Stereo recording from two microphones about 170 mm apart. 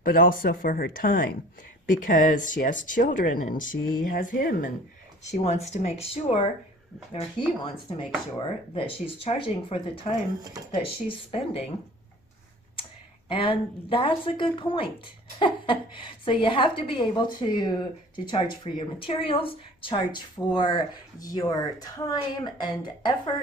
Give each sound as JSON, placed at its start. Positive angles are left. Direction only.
{"t": 0.0, "sound": "speech", "side_deg": 55}
{"t": 5.2, "sound": "speech", "side_deg": 40}
{"t": 13.3, "sound": "speech", "side_deg": 30}